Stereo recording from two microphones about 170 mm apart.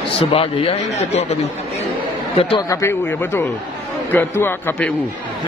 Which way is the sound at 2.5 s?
20° left (ahead or behind).